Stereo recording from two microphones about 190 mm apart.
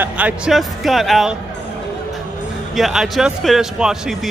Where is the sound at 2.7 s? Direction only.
Centre (ahead or behind).